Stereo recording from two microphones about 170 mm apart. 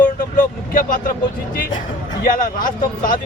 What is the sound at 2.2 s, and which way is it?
Speech, 55° left (ahead or behind).